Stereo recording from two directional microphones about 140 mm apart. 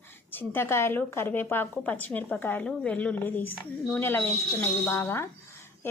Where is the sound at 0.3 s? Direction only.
15° left (ahead or behind).